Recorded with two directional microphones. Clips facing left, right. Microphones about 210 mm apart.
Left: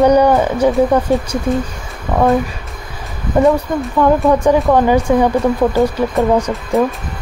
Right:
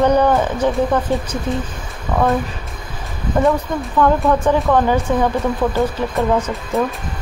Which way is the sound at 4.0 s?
15° left (ahead or behind).